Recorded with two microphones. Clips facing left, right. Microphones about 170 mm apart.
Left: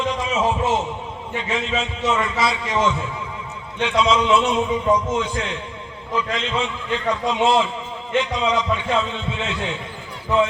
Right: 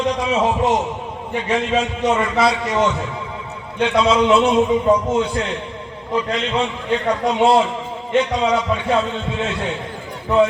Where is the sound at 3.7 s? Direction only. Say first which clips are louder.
Right 3 dB; 35° right (ahead or behind).